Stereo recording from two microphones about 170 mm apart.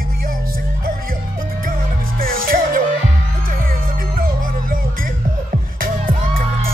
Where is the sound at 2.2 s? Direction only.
55° right (ahead or behind).